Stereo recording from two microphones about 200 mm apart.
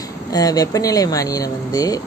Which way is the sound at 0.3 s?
20° left (ahead or behind).